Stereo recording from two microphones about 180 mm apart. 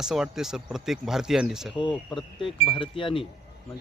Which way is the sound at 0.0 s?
5° right (ahead or behind).